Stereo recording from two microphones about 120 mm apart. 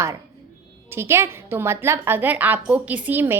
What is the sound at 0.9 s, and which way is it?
A woman's voice, 20° right (ahead or behind).